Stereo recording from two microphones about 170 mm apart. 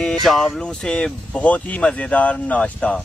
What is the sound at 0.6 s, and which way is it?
Speech, 5° left (ahead or behind).